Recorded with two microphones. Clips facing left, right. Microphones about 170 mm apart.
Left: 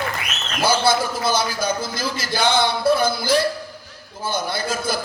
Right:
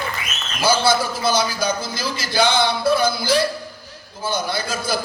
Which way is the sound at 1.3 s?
55° left (ahead or behind).